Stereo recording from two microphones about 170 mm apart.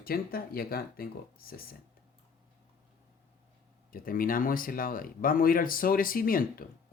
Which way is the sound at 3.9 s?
55° left (ahead or behind).